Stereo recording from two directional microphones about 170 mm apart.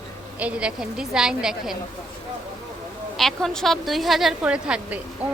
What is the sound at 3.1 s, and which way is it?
A woman's voice, centre (ahead or behind).